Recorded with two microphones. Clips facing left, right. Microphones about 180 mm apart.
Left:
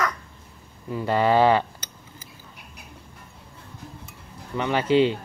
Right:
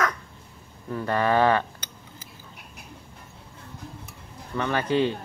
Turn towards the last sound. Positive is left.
turn(degrees=20)  # may be behind; listen again after turning